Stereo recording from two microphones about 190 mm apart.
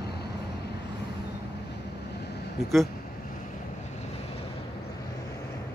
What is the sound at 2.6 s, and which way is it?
Speech, centre (ahead or behind).